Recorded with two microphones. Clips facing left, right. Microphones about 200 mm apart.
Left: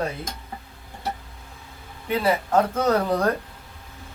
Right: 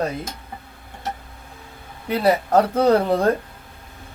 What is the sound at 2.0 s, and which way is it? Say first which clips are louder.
Speech: right 4 dB; 40° right (ahead or behind).